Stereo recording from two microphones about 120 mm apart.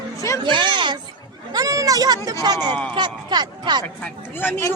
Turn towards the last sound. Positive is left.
turn(degrees=20)  # may be behind; listen again after turning